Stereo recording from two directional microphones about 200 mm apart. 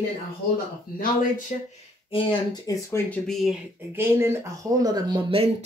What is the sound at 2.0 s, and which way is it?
Speech, 25° left (ahead or behind).